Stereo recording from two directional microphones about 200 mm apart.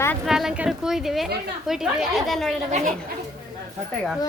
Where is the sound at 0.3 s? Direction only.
Centre (ahead or behind).